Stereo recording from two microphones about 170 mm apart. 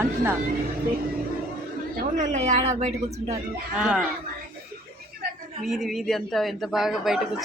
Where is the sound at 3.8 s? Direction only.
5° right (ahead or behind).